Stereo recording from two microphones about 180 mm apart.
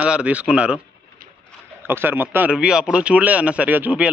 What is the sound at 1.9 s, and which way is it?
Speech, 10° right (ahead or behind).